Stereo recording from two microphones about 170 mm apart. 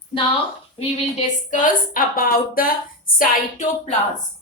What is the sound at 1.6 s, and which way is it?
A woman's voice, 55° left (ahead or behind).